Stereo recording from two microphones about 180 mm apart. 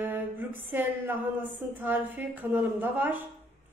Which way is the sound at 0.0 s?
10° right (ahead or behind).